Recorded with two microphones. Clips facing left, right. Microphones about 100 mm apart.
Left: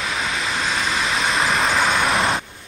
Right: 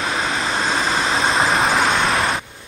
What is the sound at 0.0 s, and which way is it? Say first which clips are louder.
Vehicle: right 3 dB; 35° right (ahead or behind).